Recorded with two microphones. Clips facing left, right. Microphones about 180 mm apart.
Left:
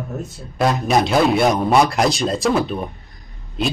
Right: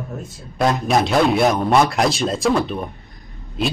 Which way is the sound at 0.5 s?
Centre (ahead or behind).